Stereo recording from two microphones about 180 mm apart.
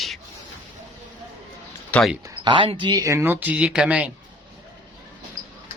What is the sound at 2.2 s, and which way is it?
Speech, 25° right (ahead or behind).